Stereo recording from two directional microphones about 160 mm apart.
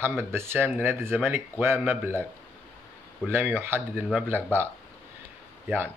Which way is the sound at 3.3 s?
15° right (ahead or behind).